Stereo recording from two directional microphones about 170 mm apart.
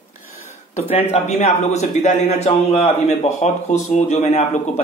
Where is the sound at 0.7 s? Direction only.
40° left (ahead or behind).